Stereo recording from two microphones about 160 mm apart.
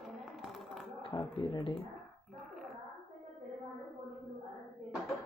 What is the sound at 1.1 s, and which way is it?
Speech, 25° left (ahead or behind).